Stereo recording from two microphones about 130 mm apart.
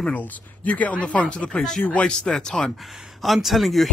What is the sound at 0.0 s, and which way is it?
Speech, 15° left (ahead or behind).